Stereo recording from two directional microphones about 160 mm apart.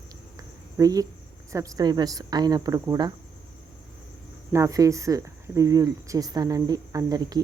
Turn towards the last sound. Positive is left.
turn(degrees=-25)  # may be behind; listen again after turning